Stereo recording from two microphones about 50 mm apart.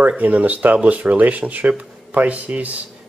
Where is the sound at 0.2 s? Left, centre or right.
Right.